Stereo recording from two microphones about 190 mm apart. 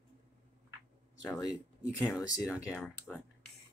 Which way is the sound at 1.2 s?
20° left (ahead or behind).